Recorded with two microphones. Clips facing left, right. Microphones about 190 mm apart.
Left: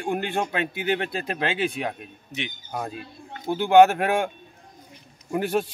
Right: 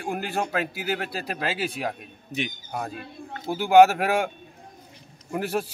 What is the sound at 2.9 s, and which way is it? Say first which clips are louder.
Speech: right 1 dB; 55° right (ahead or behind).